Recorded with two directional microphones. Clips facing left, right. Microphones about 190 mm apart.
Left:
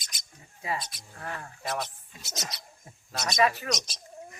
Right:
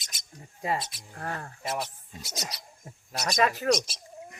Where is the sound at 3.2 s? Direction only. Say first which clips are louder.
Right 2 dB; 40° right (ahead or behind).